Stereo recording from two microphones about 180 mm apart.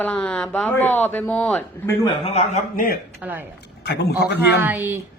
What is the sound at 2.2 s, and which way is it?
Speech, 35° left (ahead or behind).